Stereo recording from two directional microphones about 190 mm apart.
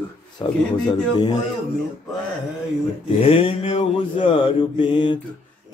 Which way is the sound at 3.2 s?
25° left (ahead or behind).